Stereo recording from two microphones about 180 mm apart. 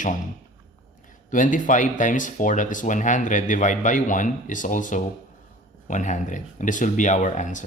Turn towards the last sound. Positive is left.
turn(degrees=45)  # may be behind; listen again after turning